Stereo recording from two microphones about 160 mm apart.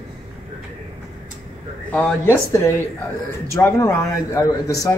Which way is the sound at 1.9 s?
15° left (ahead or behind).